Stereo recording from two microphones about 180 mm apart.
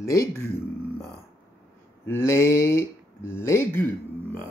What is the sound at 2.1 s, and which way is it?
Speech, 15° left (ahead or behind).